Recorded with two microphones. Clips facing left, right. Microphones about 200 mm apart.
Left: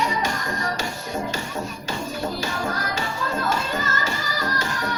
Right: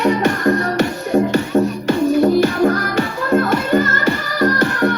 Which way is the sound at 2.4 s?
60° right (ahead or behind).